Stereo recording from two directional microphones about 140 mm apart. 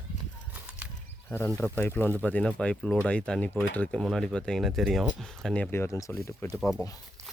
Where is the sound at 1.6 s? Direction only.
15° left (ahead or behind).